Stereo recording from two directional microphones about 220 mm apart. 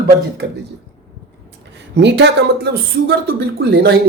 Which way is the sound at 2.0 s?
50° right (ahead or behind).